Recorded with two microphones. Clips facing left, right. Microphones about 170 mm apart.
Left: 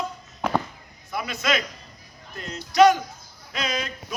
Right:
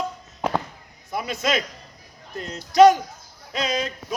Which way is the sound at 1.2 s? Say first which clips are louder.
Right 1 dB; 40° right (ahead or behind).